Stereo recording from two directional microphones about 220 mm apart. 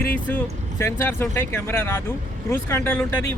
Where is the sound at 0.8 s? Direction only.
10° left (ahead or behind).